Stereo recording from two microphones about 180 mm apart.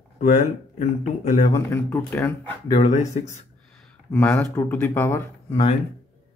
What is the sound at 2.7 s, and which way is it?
Speech, 35° left (ahead or behind).